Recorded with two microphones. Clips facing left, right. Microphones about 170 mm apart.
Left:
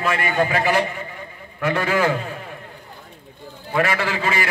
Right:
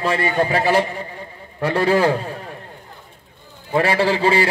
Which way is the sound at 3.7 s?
30° right (ahead or behind).